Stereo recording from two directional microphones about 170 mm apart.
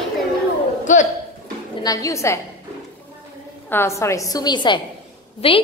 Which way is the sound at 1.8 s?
20° left (ahead or behind).